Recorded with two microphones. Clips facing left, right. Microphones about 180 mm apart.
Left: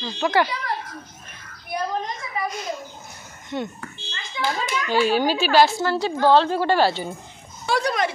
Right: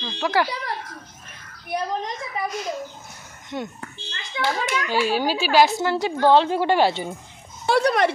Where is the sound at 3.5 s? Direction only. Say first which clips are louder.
Left 2 dB; 10° right (ahead or behind).